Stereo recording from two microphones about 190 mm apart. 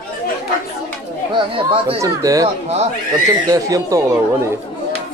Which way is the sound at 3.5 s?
15° right (ahead or behind).